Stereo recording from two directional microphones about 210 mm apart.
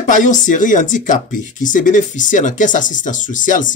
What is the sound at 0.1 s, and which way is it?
Speech, 35° left (ahead or behind).